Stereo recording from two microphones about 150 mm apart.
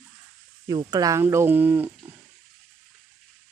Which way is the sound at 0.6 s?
25° right (ahead or behind).